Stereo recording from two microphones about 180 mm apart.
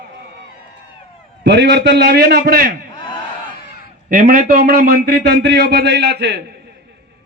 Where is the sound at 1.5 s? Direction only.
70° right (ahead or behind).